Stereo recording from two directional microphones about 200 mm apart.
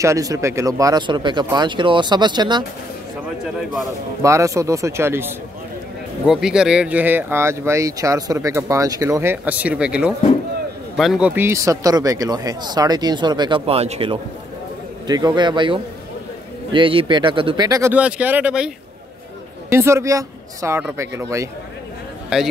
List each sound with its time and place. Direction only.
0.0 s speech: 15° right (ahead or behind)
4.2 s speech: 15° right (ahead or behind)
19.7 s speech: 15° right (ahead or behind)
22.3 s a man's voice: centre (ahead or behind)